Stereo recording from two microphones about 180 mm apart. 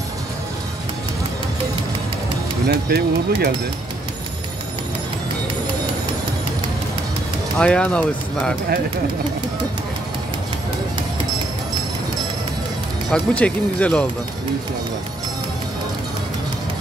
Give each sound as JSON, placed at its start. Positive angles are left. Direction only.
{"t": 2.6, "sound": "speech", "side_deg": -60}
{"t": 7.5, "sound": "speech", "side_deg": 5}
{"t": 13.1, "sound": "speech", "side_deg": 5}